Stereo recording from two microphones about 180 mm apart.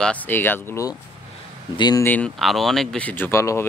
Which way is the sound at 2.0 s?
5° left (ahead or behind).